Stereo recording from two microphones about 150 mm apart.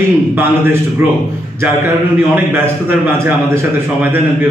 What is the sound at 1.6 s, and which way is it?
A man's voice, 15° right (ahead or behind).